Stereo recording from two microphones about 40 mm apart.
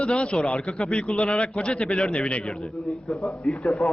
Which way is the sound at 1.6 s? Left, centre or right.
Centre.